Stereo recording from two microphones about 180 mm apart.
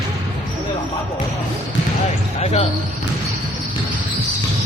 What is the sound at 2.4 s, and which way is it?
Basketball bounce, 35° left (ahead or behind).